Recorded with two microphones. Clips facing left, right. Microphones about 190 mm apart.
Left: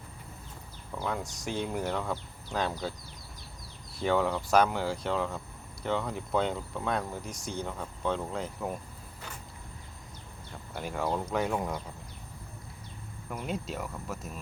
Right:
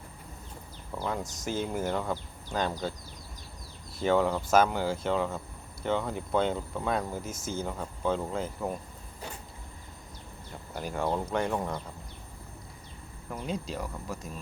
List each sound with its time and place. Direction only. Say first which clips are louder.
0.9 s speech: right 1 dB; centre (ahead or behind)
3.9 s speech: right 2 dB; centre (ahead or behind)
10.8 s speech: right 1 dB; centre (ahead or behind)
13.3 s speech: right 1 dB; centre (ahead or behind)